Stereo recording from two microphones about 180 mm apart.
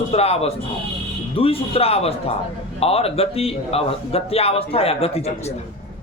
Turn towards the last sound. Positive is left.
turn(degrees=35)  # may be behind; listen again after turning